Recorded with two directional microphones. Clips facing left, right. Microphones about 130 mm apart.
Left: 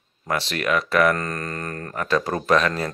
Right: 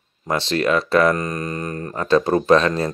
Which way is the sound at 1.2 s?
15° right (ahead or behind).